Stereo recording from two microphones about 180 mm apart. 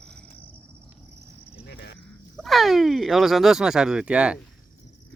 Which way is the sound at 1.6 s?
70° left (ahead or behind).